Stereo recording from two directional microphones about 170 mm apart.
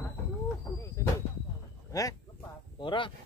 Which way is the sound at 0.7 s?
15° left (ahead or behind).